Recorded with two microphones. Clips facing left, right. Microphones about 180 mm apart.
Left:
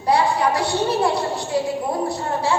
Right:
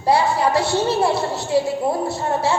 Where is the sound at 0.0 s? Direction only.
25° right (ahead or behind).